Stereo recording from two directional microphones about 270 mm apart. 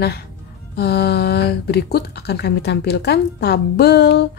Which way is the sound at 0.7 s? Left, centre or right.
Left.